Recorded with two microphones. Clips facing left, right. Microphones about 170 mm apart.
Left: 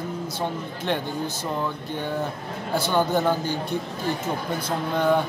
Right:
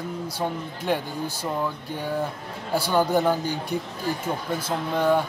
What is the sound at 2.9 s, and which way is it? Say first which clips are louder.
Speech: right 1 dB; 10° right (ahead or behind).